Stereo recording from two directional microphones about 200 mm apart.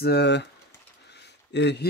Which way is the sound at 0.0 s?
55° left (ahead or behind).